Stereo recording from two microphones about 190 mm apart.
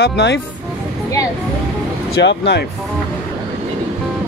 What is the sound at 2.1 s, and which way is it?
Speech, 65° left (ahead or behind).